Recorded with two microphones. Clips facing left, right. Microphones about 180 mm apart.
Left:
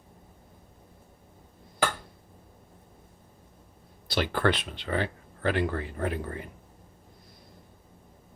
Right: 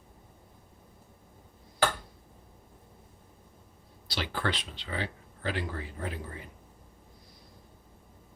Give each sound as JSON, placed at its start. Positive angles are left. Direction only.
{"t": 4.1, "sound": "speech", "side_deg": 55}